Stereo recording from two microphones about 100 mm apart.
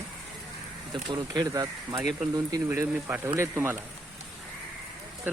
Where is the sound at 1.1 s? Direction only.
40° right (ahead or behind).